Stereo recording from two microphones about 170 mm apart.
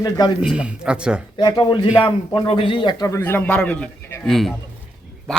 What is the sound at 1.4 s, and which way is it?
A man's voice, 25° left (ahead or behind).